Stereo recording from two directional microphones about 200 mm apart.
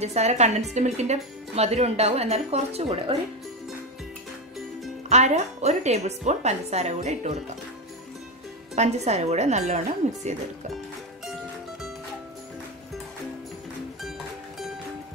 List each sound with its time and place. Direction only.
0.0 s speech: 35° right (ahead or behind)
5.1 s speech: 35° right (ahead or behind)
8.7 s speech: 35° right (ahead or behind)